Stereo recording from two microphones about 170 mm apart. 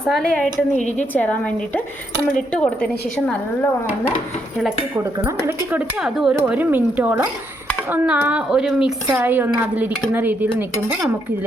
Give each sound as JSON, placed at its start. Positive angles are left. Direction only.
{"t": 0.1, "sound": "a woman's voice", "side_deg": 0}
{"t": 0.8, "sound": "a woman's voice", "side_deg": 45}
{"t": 1.1, "sound": "a woman's voice", "side_deg": 10}
{"t": 4.9, "sound": "a woman's voice", "side_deg": -10}